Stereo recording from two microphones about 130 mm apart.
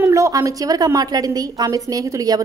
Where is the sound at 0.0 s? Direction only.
25° right (ahead or behind).